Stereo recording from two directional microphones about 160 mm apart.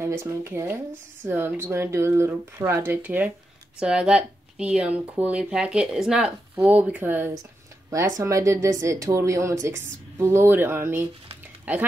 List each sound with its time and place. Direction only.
0.0 s speech: 15° right (ahead or behind)